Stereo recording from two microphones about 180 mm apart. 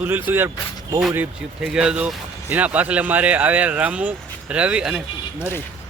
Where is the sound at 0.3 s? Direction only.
10° right (ahead or behind).